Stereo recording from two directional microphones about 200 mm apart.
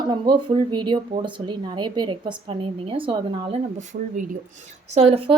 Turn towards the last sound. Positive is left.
turn(degrees=-30)  # may be behind; listen again after turning